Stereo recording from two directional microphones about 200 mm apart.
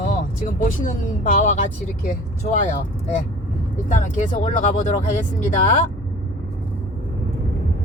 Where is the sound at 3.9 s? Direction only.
40° left (ahead or behind).